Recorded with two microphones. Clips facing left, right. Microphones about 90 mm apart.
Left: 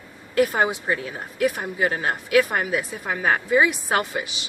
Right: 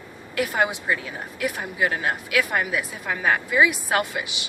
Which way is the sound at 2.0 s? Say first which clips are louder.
Left 4 dB; 35° left (ahead or behind).